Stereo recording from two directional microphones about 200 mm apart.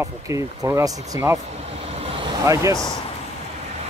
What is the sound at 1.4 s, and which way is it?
Vehicle, 30° right (ahead or behind).